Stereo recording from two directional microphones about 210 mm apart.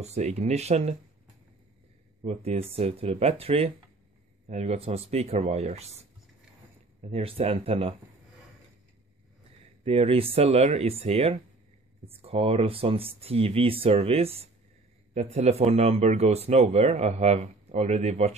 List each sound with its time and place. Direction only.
0.0 s speech: 30° right (ahead or behind)
2.2 s speech: 30° right (ahead or behind)
7.0 s speech: 30° right (ahead or behind)
9.8 s speech: 25° right (ahead or behind)